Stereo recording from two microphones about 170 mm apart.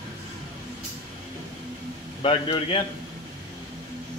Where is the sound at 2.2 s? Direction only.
35° left (ahead or behind).